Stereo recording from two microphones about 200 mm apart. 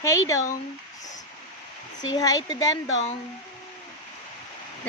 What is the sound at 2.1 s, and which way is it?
Speech, 20° left (ahead or behind).